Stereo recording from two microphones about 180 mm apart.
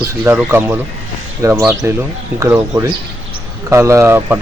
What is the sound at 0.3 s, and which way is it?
Speech, 10° right (ahead or behind).